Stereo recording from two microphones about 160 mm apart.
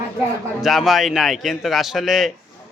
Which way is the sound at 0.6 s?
Centre (ahead or behind).